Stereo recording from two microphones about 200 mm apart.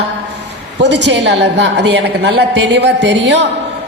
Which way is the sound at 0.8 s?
60° right (ahead or behind).